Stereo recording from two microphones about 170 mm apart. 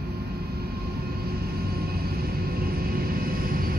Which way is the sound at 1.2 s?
65° right (ahead or behind).